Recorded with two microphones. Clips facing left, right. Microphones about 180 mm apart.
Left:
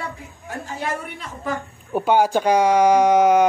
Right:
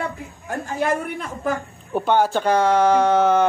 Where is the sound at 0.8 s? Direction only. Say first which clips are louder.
Right 7 dB; 50° right (ahead or behind).